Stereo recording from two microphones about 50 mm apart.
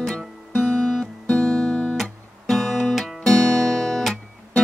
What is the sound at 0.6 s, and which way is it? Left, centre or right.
Guitar, centre.